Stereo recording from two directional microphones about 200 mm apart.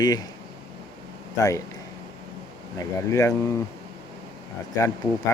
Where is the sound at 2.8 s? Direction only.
15° left (ahead or behind).